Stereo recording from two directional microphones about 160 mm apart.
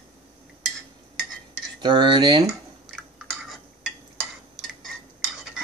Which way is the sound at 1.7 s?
30° right (ahead or behind).